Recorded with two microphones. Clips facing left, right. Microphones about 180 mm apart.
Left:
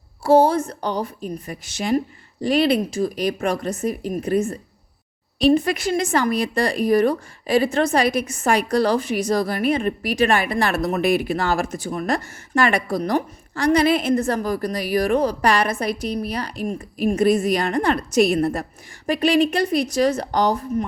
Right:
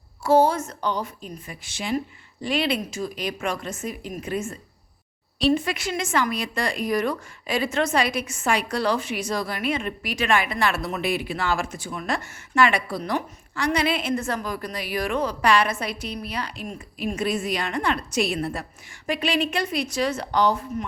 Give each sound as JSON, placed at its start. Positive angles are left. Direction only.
{"t": 0.2, "sound": "a woman's voice", "side_deg": 30}